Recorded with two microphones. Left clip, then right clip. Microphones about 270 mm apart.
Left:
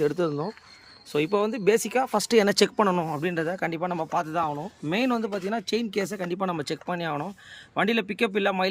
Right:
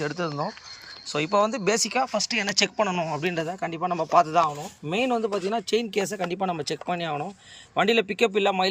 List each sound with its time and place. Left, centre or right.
0.0 s speech: centre